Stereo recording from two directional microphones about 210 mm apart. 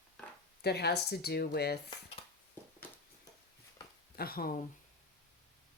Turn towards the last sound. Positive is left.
turn(degrees=45)  # may be behind; listen again after turning